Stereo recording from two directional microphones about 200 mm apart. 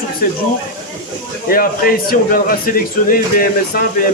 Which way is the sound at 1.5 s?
45° left (ahead or behind).